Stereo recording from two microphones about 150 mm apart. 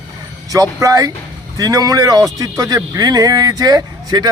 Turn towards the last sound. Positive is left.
turn(degrees=-25)  # may be behind; listen again after turning